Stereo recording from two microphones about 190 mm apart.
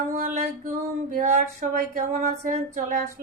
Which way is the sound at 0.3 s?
45° right (ahead or behind).